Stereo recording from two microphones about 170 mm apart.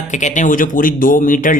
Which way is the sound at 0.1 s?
45° left (ahead or behind).